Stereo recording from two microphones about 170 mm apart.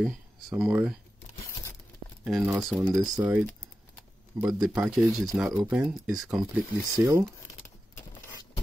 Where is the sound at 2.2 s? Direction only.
5° right (ahead or behind).